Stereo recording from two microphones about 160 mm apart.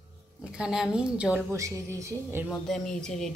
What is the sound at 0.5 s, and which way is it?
Speech, 5° right (ahead or behind).